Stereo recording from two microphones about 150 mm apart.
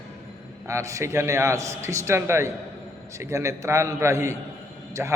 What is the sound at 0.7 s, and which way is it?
A man's voice, 20° right (ahead or behind).